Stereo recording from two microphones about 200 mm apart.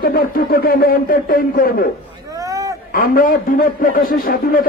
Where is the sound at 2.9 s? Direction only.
45° left (ahead or behind).